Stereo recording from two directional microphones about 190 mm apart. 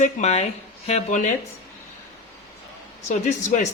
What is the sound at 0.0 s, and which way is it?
Speech, 35° left (ahead or behind).